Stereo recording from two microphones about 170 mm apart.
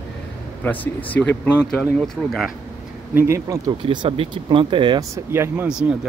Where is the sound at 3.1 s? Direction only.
15° right (ahead or behind).